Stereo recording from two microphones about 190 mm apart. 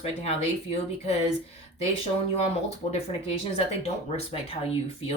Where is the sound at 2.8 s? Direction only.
30° left (ahead or behind).